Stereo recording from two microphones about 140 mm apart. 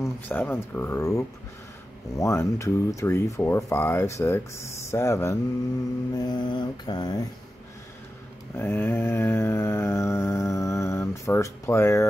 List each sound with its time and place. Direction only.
0.3 s speech: 15° left (ahead or behind)
6.1 s mantra: 30° left (ahead or behind)
8.5 s a sound: 15° left (ahead or behind)